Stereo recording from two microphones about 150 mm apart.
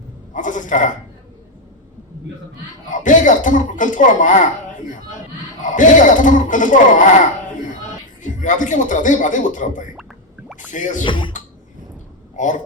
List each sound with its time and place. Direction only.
0.3 s speech: 60° left (ahead or behind)
2.9 s speech: 60° left (ahead or behind)
11.0 s speech: 35° left (ahead or behind)
12.4 s speech: 55° left (ahead or behind)